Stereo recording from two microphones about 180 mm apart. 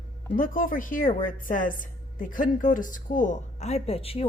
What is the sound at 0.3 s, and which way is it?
A woman's voice, 50° left (ahead or behind).